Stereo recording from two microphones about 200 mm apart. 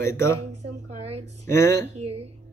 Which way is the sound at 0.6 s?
35° right (ahead or behind).